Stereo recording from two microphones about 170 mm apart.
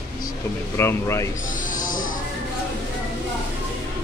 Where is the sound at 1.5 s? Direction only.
50° left (ahead or behind).